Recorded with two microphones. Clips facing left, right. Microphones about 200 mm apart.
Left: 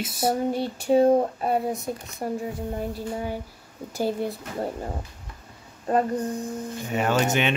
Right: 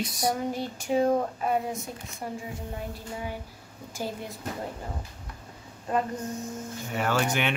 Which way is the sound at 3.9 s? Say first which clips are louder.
Left 8 dB; 35° left (ahead or behind).